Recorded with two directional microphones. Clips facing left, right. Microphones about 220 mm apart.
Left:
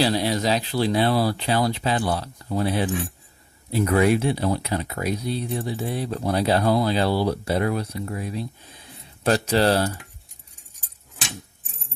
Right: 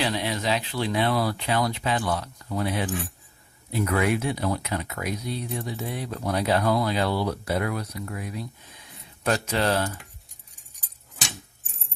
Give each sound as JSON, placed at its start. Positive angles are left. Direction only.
{"t": 0.0, "sound": "speech", "side_deg": 35}